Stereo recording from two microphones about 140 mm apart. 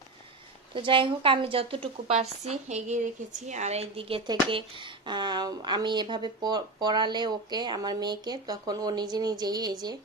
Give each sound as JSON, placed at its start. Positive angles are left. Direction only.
{"t": 0.7, "sound": "a woman's voice", "side_deg": -40}